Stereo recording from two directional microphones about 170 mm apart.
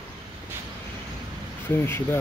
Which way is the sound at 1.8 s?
15° left (ahead or behind).